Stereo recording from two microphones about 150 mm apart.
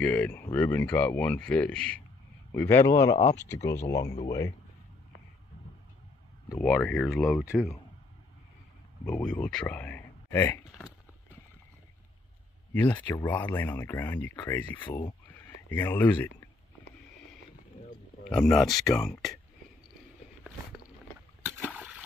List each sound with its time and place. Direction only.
0.0 s a man's voice: 10° left (ahead or behind)
6.6 s speech: 5° left (ahead or behind)
9.0 s speech: 5° left (ahead or behind)
12.7 s speech: 10° left (ahead or behind)
15.2 s a sound: 15° left (ahead or behind)
18.3 s speech: 5° left (ahead or behind)
21.6 s a sound: 10° right (ahead or behind)